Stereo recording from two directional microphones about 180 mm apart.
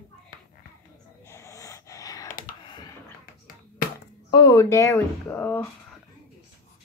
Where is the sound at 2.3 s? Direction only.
50° left (ahead or behind).